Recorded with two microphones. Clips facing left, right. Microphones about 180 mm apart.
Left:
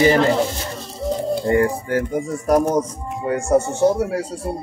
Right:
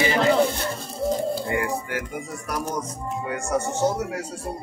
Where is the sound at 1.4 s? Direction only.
45° left (ahead or behind).